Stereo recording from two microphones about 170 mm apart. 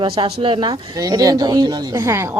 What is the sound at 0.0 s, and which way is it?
A woman's voice, 30° right (ahead or behind).